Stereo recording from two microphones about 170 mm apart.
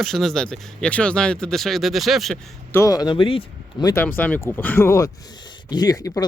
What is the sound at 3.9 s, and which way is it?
Speech, 10° left (ahead or behind).